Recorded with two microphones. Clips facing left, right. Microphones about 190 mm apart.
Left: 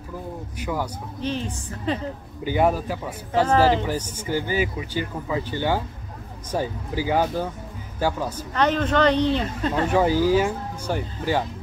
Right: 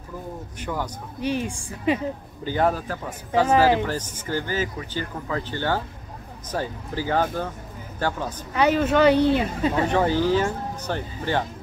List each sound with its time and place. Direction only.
0.6 s speech: 10° left (ahead or behind)
1.2 s speech: 10° right (ahead or behind)
2.4 s speech: 10° left (ahead or behind)
3.3 s speech: 10° right (ahead or behind)
3.8 s speech: 15° left (ahead or behind)
8.5 s speech: 10° right (ahead or behind)
9.8 s speech: 10° left (ahead or behind)